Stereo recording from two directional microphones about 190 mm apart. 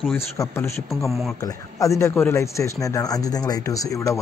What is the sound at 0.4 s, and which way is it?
Speech, 15° left (ahead or behind).